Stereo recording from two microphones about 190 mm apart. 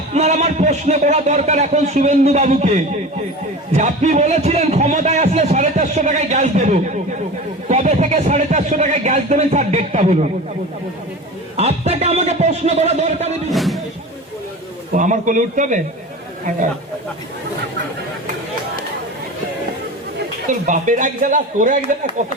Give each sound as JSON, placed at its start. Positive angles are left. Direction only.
{"t": 0.1, "sound": "speech", "side_deg": -35}
{"t": 11.5, "sound": "speech", "side_deg": -35}
{"t": 13.5, "sound": "speech", "side_deg": 0}
{"t": 14.9, "sound": "speech", "side_deg": -40}
{"t": 20.5, "sound": "speech", "side_deg": -40}